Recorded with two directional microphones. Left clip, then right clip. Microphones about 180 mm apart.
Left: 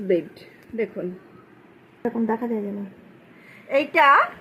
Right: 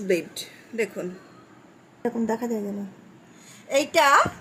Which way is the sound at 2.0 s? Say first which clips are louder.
Left 2 dB; 10° left (ahead or behind).